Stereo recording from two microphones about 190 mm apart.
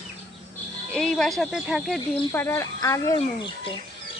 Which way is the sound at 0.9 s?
5° left (ahead or behind).